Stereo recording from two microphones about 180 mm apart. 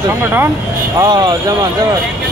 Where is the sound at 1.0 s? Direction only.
25° right (ahead or behind).